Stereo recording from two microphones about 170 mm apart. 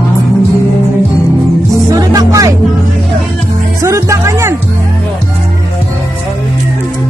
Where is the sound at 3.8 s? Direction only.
20° right (ahead or behind).